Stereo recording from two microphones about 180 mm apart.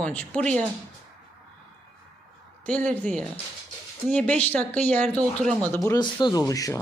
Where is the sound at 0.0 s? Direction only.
5° left (ahead or behind).